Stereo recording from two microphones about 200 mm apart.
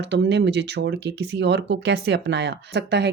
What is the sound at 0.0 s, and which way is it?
Speech, 60° right (ahead or behind).